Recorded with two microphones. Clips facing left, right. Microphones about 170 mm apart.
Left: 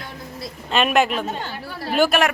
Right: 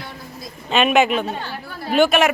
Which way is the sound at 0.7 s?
Centre (ahead or behind).